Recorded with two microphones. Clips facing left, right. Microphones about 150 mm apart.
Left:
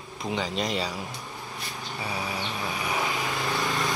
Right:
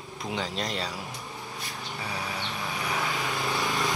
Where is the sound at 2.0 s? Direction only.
10° left (ahead or behind).